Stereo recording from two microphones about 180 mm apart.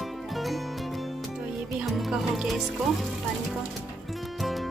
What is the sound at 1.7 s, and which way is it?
Music, 5° right (ahead or behind).